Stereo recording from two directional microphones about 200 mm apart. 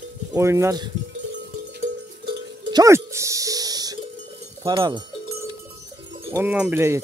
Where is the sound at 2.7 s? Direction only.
15° right (ahead or behind).